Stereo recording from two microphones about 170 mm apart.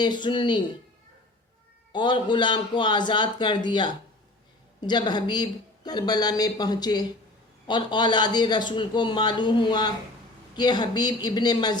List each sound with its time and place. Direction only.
0.0 s a man's voice: 25° left (ahead or behind)
1.9 s a man's voice: 25° left (ahead or behind)